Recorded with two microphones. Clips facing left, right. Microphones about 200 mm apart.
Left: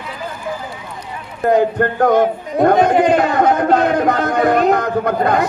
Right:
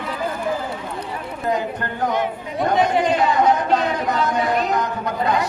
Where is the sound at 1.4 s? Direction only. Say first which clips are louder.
Left 10 dB; 55° left (ahead or behind).